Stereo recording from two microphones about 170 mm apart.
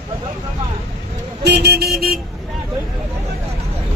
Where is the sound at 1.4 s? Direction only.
75° right (ahead or behind).